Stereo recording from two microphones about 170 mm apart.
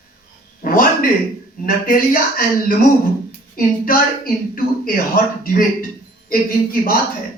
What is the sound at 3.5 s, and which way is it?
A woman's voice, 55° left (ahead or behind).